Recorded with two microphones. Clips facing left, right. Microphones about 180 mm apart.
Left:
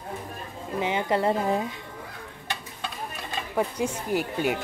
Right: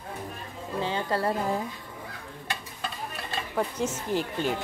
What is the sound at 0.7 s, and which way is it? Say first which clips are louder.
Speech: left 3 dB; 15° left (ahead or behind).